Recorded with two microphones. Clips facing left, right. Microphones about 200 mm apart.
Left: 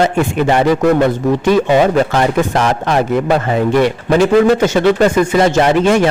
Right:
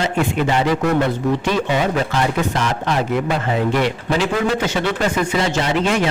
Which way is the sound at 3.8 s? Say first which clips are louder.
Left 7 dB; 45° left (ahead or behind).